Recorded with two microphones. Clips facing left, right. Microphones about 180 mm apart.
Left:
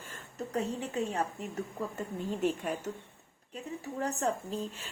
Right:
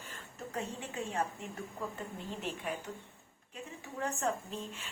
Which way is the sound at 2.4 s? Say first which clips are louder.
Left 8 dB; 45° left (ahead or behind).